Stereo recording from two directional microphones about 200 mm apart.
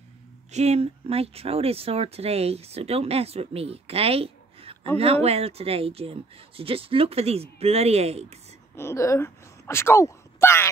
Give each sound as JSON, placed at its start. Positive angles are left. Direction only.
{"t": 0.5, "sound": "speech", "side_deg": -35}
{"t": 8.7, "sound": "speech", "side_deg": 15}